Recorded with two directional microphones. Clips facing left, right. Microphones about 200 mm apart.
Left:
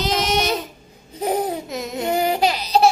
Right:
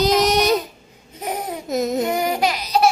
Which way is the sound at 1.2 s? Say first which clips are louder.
Left 5 dB; 30° left (ahead or behind).